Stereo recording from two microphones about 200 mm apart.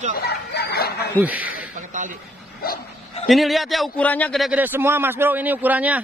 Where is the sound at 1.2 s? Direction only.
5° right (ahead or behind).